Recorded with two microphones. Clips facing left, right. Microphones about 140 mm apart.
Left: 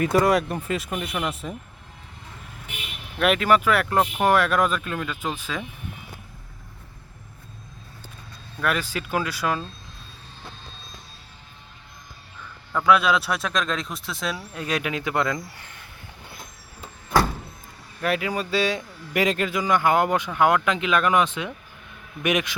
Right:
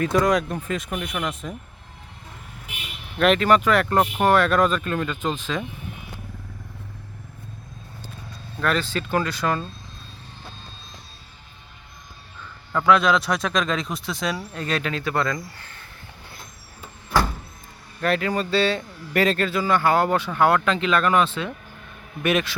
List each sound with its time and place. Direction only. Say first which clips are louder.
0.0 s speech: even; 5° left (ahead or behind)
3.2 s a man's voice: right 2 dB; 5° left (ahead or behind)
8.6 s a man's voice: right 2 dB; 10° left (ahead or behind)
12.9 s a man's voice: right 1 dB; 5° left (ahead or behind)
18.0 s a man's voice: right 2 dB; 10° left (ahead or behind)